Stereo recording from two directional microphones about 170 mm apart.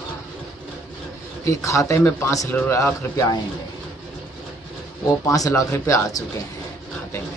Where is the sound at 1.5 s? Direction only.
20° left (ahead or behind).